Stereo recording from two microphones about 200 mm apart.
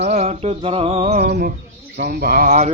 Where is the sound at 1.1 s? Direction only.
50° right (ahead or behind).